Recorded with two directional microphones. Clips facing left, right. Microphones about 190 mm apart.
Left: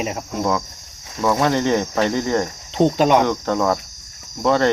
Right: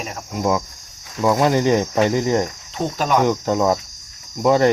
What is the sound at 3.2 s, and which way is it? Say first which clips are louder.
Speech: right 2 dB; 15° right (ahead or behind).